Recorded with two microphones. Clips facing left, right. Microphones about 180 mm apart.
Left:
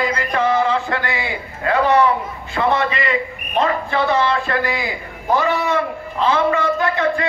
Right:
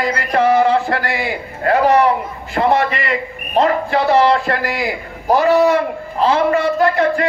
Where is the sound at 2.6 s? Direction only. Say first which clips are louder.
Right 3 dB; 40° right (ahead or behind).